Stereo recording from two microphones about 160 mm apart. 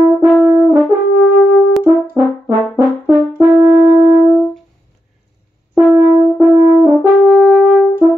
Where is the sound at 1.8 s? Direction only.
15° right (ahead or behind).